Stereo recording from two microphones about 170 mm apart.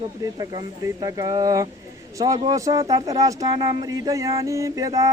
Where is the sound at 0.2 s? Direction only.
20° right (ahead or behind).